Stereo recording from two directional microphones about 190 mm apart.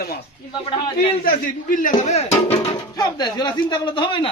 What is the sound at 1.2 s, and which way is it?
Speech, 45° left (ahead or behind).